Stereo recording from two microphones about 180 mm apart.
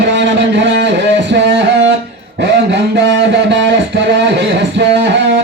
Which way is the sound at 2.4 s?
70° right (ahead or behind).